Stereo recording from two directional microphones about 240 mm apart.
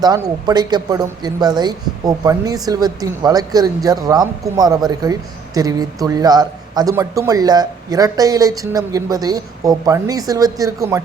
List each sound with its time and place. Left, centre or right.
0.4 s speech: centre